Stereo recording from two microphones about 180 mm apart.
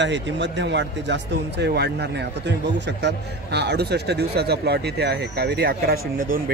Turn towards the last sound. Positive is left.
turn(degrees=-55)  # may be behind; listen again after turning